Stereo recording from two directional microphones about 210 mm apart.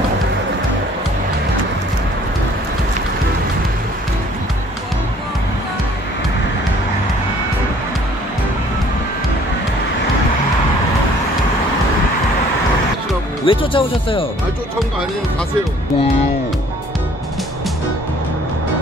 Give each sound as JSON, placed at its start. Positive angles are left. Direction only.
{"t": 13.5, "sound": "speech", "side_deg": 25}